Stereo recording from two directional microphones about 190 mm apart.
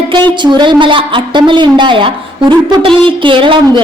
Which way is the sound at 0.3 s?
25° right (ahead or behind).